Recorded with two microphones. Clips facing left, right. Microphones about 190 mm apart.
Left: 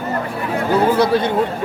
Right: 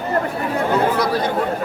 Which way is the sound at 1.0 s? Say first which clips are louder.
Left 4 dB; 25° left (ahead or behind).